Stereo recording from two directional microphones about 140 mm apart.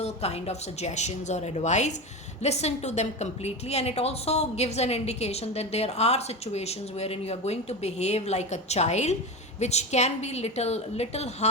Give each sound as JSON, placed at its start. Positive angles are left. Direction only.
{"t": 0.0, "sound": "a woman's voice", "side_deg": 50}